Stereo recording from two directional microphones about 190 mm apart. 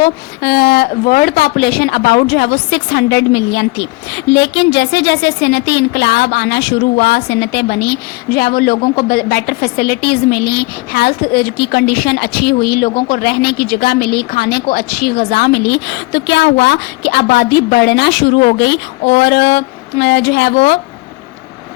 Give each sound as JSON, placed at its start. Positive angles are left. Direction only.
{"t": 0.0, "sound": "a woman's voice", "side_deg": 55}